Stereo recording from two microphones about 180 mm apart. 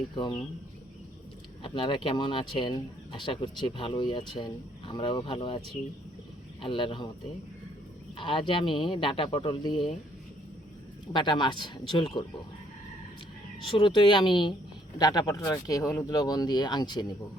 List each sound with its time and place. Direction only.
0.2 s speech: 30° left (ahead or behind)
1.6 s speech: 30° left (ahead or behind)
8.2 s speech: 30° left (ahead or behind)
11.1 s speech: 25° left (ahead or behind)
13.7 s speech: 30° left (ahead or behind)